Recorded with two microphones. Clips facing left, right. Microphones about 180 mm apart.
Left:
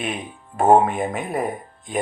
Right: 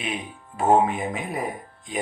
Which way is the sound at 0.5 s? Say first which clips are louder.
Left 4 dB; 55° left (ahead or behind).